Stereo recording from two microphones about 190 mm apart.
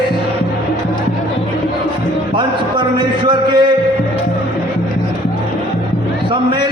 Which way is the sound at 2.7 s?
25° right (ahead or behind).